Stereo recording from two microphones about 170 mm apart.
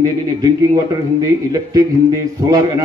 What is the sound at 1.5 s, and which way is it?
Speech, 20° right (ahead or behind).